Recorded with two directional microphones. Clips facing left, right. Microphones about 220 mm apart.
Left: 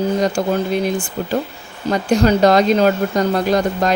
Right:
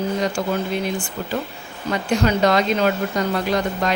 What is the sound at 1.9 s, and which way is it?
A woman's voice, 40° left (ahead or behind).